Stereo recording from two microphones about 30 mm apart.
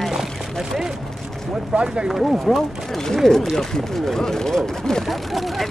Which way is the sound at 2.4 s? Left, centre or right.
Centre.